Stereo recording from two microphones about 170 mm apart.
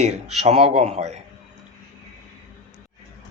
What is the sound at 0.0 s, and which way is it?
Speech, 40° right (ahead or behind).